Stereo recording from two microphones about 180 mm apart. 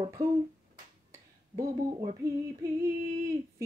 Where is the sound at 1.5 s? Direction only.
20° right (ahead or behind).